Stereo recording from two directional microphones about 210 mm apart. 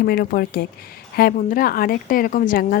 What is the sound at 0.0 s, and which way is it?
A woman's voice, 45° left (ahead or behind).